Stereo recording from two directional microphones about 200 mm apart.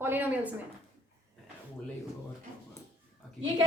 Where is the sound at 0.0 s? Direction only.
10° right (ahead or behind).